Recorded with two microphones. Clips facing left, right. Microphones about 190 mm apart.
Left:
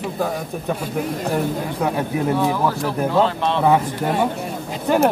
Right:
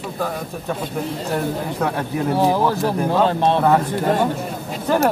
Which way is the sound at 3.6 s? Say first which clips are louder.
Even; 15° left (ahead or behind).